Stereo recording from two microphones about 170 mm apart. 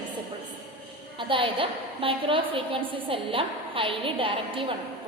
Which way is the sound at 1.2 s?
30° right (ahead or behind).